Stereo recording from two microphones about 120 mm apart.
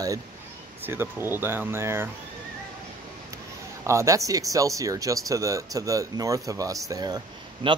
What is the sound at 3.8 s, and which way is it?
Speech, 25° right (ahead or behind).